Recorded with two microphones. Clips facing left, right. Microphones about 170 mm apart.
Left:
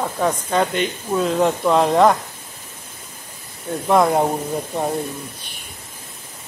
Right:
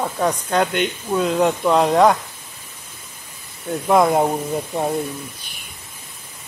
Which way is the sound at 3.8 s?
Centre (ahead or behind).